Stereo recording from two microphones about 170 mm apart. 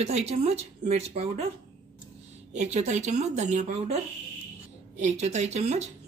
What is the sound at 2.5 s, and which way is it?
Speech, 40° right (ahead or behind).